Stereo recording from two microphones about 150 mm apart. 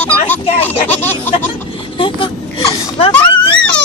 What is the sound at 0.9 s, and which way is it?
Baby laughter, 15° left (ahead or behind).